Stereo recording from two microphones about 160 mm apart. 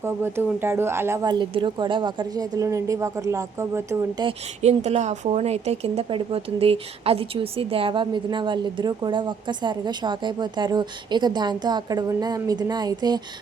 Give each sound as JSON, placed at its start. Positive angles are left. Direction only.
{"t": 0.0, "sound": "speech", "side_deg": -15}
{"t": 4.3, "sound": "speech", "side_deg": -45}